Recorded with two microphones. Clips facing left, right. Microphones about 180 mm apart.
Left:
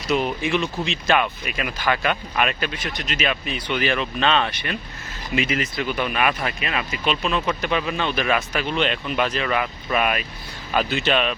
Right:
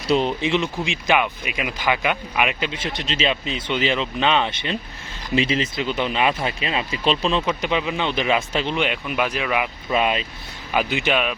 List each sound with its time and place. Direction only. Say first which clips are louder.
0.1 s speech: right 2 dB; 25° right (ahead or behind)
7.4 s speech: right 1 dB; 15° right (ahead or behind)
9.9 s speech: right 2 dB; 20° right (ahead or behind)